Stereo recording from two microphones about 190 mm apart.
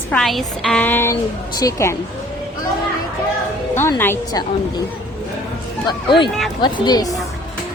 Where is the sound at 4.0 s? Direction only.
15° left (ahead or behind).